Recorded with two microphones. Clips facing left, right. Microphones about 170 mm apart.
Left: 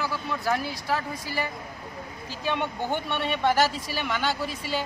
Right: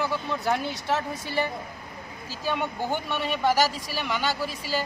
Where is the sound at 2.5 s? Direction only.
Centre (ahead or behind).